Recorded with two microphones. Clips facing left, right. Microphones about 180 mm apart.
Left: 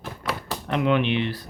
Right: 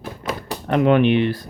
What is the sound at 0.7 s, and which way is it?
Speech, 50° right (ahead or behind).